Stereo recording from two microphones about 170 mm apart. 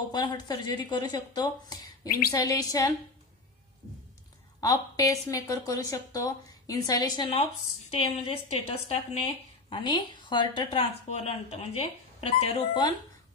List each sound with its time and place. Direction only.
0.1 s a woman's voice: 25° left (ahead or behind)
4.6 s a woman's voice: 20° left (ahead or behind)
7.9 s a woman's voice: 35° left (ahead or behind)